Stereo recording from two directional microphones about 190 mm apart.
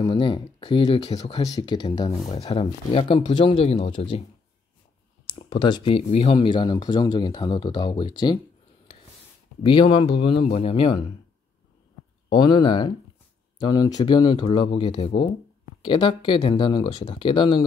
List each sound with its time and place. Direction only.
0.0 s speech: 25° left (ahead or behind)
9.7 s speech: 25° left (ahead or behind)
12.3 s speech: 25° left (ahead or behind)